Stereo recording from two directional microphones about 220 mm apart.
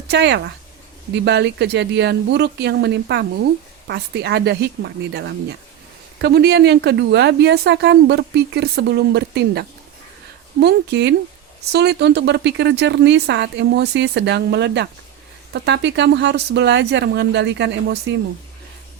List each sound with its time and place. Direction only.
0.1 s speech: 50° right (ahead or behind)